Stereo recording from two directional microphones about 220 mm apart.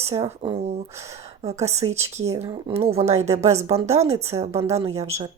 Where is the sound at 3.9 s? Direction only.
30° right (ahead or behind).